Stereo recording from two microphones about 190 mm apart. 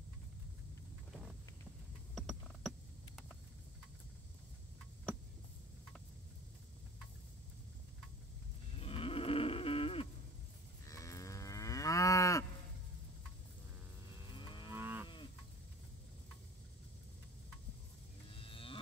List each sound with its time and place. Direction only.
2.1 s a sound: centre (ahead or behind)
8.7 s livestock: 30° left (ahead or behind)
10.9 s moo: 15° left (ahead or behind)
14.3 s livestock: 25° left (ahead or behind)
14.7 s moo: 10° right (ahead or behind)
18.3 s livestock: 30° left (ahead or behind)